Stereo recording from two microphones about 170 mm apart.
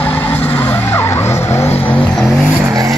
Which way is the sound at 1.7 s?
35° left (ahead or behind).